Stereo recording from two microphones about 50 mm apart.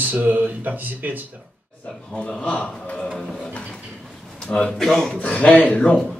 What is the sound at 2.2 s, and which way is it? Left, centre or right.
Speech, centre.